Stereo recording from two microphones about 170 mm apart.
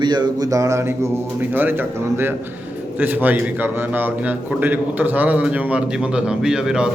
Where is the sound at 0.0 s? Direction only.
25° right (ahead or behind).